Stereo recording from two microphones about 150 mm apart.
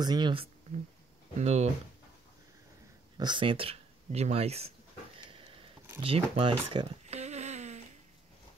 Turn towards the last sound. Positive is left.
turn(degrees=-50)  # may be behind; listen again after turning